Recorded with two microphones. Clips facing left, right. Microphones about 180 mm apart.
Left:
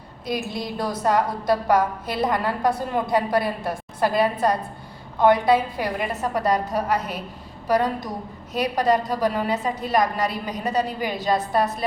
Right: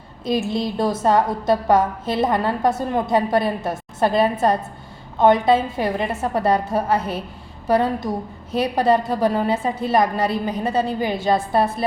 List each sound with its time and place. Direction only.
0.3 s a woman's voice: 25° right (ahead or behind)